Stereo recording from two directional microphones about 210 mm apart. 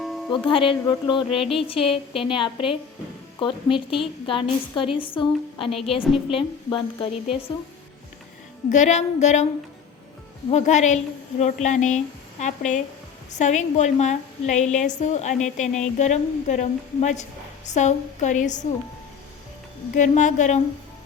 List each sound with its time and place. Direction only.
0.0 s music: centre (ahead or behind)
0.3 s a woman's voice: 25° left (ahead or behind)
8.7 s a woman's voice: 35° left (ahead or behind)
10.5 s a woman's voice: 35° left (ahead or behind)
19.9 s a woman's voice: 35° left (ahead or behind)